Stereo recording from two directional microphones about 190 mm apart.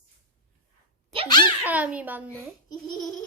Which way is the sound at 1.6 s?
10° right (ahead or behind).